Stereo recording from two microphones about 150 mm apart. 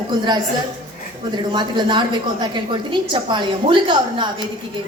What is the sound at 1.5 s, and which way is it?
A woman's voice, 30° right (ahead or behind).